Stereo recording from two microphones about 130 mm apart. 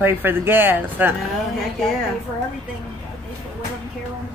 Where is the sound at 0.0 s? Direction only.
15° right (ahead or behind).